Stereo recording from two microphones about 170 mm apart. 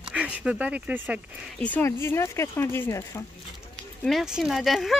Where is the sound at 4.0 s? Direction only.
Centre (ahead or behind).